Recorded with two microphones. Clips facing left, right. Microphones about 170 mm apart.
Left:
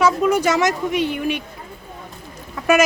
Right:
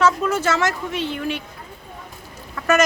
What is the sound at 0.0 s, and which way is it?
Speech, 15° left (ahead or behind).